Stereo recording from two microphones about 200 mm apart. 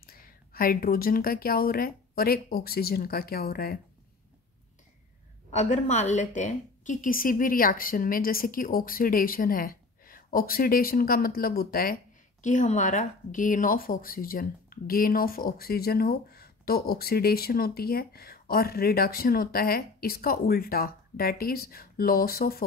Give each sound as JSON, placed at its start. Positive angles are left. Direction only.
{"t": 0.0, "sound": "a woman's voice", "side_deg": 45}
{"t": 5.5, "sound": "a woman's voice", "side_deg": 35}